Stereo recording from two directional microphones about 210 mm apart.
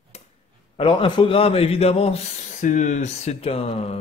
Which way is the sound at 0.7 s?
25° left (ahead or behind).